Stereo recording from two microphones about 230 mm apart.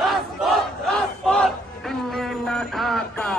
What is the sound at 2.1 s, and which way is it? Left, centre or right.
Music, centre.